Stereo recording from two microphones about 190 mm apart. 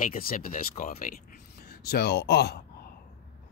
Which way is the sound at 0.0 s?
50° left (ahead or behind).